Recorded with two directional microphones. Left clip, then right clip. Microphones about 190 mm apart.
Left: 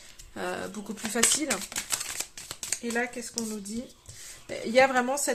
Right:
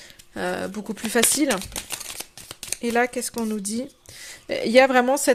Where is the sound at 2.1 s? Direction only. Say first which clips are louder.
Even; 30° right (ahead or behind).